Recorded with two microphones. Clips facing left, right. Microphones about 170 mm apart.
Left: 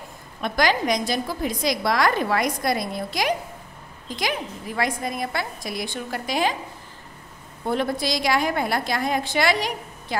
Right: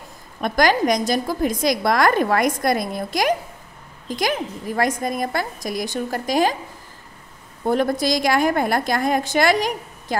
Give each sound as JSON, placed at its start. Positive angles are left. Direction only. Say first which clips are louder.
{"t": 0.4, "sound": "a woman's voice", "louder": "right 4 dB", "side_deg": -45}
{"t": 7.6, "sound": "a woman's voice", "louder": "right 5 dB", "side_deg": -45}